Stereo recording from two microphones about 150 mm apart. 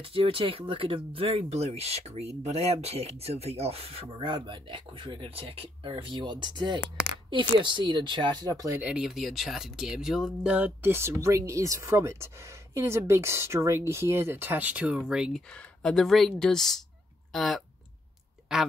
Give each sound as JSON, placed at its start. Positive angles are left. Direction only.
{"t": 0.0, "sound": "speech", "side_deg": -40}
{"t": 8.8, "sound": "speech", "side_deg": -5}
{"t": 17.3, "sound": "a sound", "side_deg": 0}